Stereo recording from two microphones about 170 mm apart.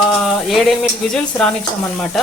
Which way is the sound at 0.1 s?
Centre (ahead or behind).